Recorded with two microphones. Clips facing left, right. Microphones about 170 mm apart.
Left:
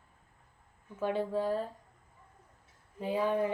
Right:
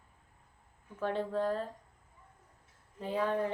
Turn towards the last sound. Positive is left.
turn(degrees=10)  # may be behind; listen again after turning